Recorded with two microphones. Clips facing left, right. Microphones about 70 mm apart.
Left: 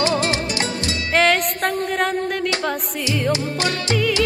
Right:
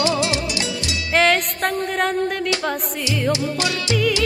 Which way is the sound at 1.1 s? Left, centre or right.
Centre.